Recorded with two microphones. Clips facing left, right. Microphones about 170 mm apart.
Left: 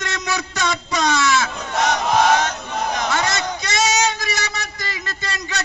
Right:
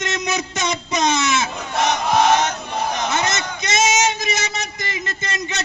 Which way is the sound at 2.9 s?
20° right (ahead or behind).